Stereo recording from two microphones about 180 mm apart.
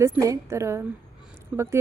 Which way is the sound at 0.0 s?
15° right (ahead or behind).